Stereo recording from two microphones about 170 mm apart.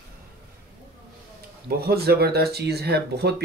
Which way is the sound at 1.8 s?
65° right (ahead or behind).